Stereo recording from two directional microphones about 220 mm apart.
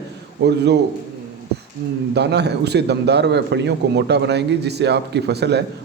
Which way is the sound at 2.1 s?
50° right (ahead or behind).